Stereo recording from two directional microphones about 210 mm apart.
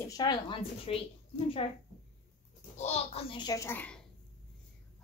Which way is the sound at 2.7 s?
30° left (ahead or behind).